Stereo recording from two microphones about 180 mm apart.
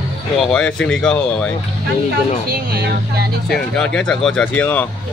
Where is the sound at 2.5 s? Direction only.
55° right (ahead or behind).